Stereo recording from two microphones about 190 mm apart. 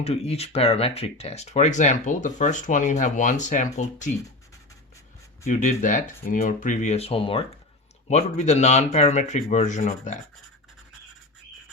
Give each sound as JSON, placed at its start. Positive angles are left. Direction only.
{"t": 0.0, "sound": "speech", "side_deg": 35}
{"t": 5.5, "sound": "speech", "side_deg": 40}